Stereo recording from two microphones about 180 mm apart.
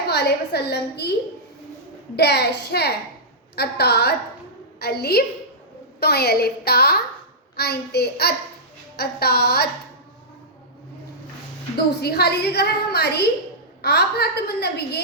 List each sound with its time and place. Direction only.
0.1 s a woman's voice: 65° left (ahead or behind)
2.1 s a woman's voice: 65° left (ahead or behind)
12.0 s a woman's voice: 65° left (ahead or behind)